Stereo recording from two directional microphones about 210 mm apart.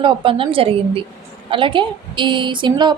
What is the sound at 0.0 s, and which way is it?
A woman's voice, 25° right (ahead or behind).